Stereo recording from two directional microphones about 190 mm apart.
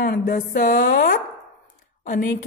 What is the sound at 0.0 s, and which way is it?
A woman's voice, 55° left (ahead or behind).